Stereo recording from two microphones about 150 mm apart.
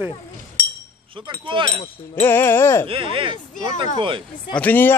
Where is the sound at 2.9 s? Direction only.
35° right (ahead or behind).